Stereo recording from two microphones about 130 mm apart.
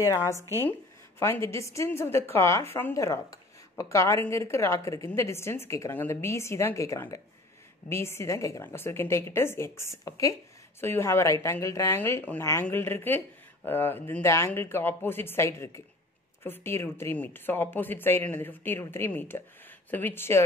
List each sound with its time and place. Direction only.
0.0 s a woman's voice: 25° left (ahead or behind)